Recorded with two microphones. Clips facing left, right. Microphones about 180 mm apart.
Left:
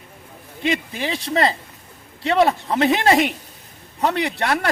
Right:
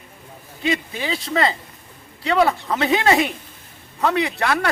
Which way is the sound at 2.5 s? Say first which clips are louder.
Left 1 dB; 30° left (ahead or behind).